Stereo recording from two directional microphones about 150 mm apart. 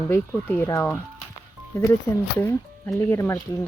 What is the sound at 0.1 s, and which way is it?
Speech, 15° left (ahead or behind).